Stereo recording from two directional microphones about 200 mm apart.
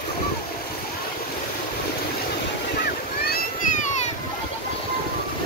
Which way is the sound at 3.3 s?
40° left (ahead or behind).